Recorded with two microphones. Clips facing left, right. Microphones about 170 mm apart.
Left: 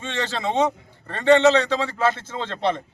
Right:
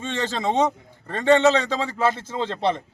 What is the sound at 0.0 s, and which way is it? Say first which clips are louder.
Speech: right 1 dB; 40° right (ahead or behind).